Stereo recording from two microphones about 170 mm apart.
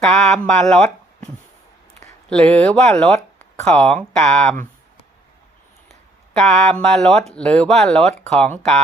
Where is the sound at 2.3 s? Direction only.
5° left (ahead or behind).